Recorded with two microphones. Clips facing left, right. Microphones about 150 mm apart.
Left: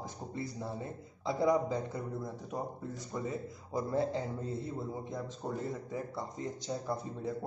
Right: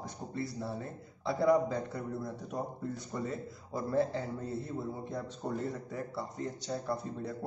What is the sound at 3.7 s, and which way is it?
Speech, 20° left (ahead or behind).